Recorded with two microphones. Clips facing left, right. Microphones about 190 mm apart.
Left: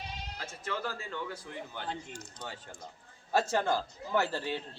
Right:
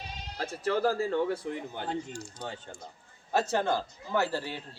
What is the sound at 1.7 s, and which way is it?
Speech, 45° right (ahead or behind).